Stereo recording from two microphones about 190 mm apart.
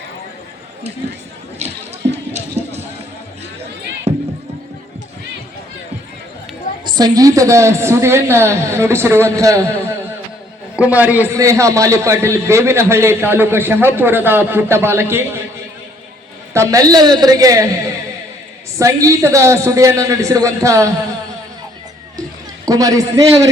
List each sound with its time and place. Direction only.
1.5 s a sound: 35° right (ahead or behind)
4.1 s basketball bounce: 35° right (ahead or behind)
6.8 s a man's voice: 20° right (ahead or behind)
10.8 s a man's voice: 10° right (ahead or behind)
16.6 s a woman's voice: 15° right (ahead or behind)
18.8 s a man's voice: 15° right (ahead or behind)
22.6 s a man's voice: 20° right (ahead or behind)